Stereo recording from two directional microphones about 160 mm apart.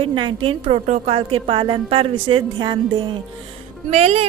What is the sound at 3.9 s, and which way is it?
Speech, 40° right (ahead or behind).